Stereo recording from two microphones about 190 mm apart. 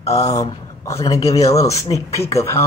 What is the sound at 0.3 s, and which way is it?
A man's voice, 15° left (ahead or behind).